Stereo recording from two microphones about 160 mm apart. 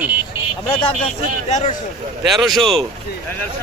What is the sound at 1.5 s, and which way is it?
Speech, 45° left (ahead or behind).